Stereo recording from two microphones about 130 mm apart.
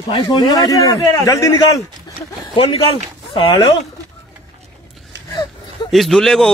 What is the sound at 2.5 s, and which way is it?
Speech, 45° left (ahead or behind).